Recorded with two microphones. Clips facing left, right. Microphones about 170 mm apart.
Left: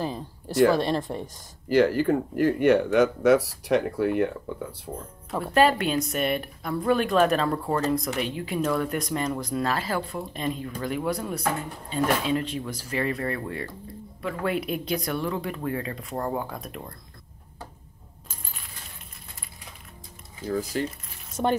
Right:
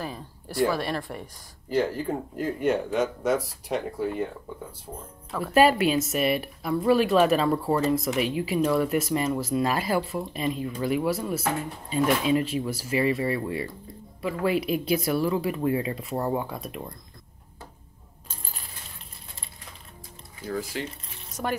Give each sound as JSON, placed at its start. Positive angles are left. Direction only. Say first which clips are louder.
{"t": 0.0, "sound": "a sound", "louder": "left 4 dB", "side_deg": 25}
{"t": 0.7, "sound": "speech", "louder": "left 5 dB", "side_deg": 20}
{"t": 1.7, "sound": "speech", "louder": "left 5 dB", "side_deg": 75}
{"t": 5.4, "sound": "speech", "louder": "right 2 dB", "side_deg": -10}
{"t": 20.5, "sound": "speech", "louder": "left 4 dB", "side_deg": 35}
{"t": 21.4, "sound": "speech", "louder": "left 5 dB", "side_deg": 20}